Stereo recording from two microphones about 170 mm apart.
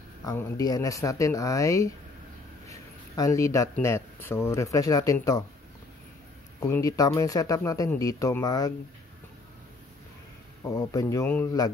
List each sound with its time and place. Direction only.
0.2 s speech: 20° left (ahead or behind)
2.7 s a sound: 20° left (ahead or behind)
3.7 s speech: 15° left (ahead or behind)
6.6 s speech: 20° left (ahead or behind)
10.7 s speech: 20° left (ahead or behind)